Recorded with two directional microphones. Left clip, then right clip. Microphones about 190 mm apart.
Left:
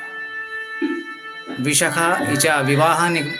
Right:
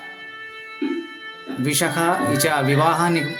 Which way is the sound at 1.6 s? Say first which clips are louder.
Left 3 dB; 15° right (ahead or behind).